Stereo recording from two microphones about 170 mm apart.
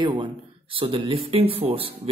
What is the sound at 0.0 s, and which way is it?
Speech, 25° right (ahead or behind).